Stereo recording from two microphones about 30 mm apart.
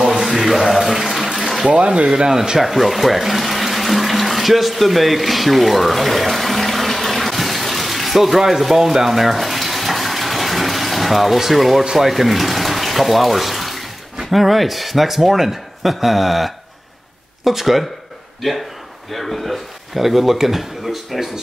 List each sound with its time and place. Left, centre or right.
0.2 s mantra: centre
0.8 s water: centre
2.1 s speech: right
2.6 s water: centre
11.9 s speech: centre
19.1 s speech: centre